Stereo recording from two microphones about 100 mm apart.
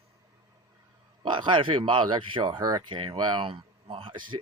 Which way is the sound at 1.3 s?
55° right (ahead or behind).